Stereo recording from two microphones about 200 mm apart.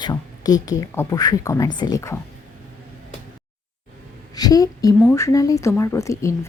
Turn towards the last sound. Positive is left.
turn(degrees=15)  # may be behind; listen again after turning